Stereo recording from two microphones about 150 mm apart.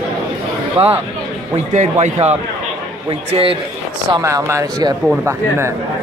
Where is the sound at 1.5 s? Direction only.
50° right (ahead or behind).